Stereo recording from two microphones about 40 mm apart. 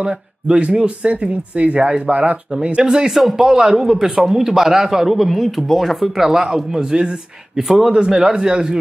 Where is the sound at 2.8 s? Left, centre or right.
Centre.